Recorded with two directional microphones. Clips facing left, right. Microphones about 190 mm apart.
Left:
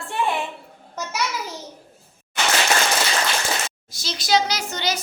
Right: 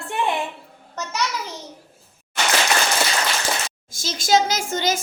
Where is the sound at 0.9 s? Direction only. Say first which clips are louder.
Right 1 dB; 10° left (ahead or behind).